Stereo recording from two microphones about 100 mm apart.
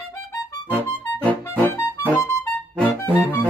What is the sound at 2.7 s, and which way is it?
Music, 15° left (ahead or behind).